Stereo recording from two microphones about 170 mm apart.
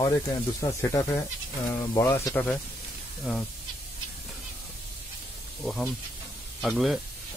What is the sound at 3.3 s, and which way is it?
Speech, centre (ahead or behind).